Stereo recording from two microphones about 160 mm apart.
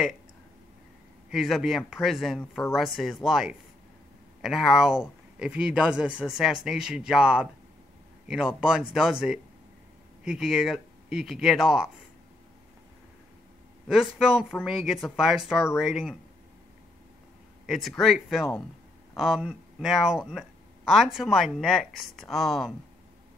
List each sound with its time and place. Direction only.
1.3 s speech: centre (ahead or behind)
13.8 s speech: 5° right (ahead or behind)
17.6 s speech: centre (ahead or behind)